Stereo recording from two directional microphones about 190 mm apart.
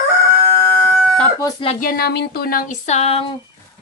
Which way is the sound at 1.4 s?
20° left (ahead or behind).